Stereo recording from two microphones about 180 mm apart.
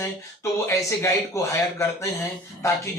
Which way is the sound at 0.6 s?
15° left (ahead or behind).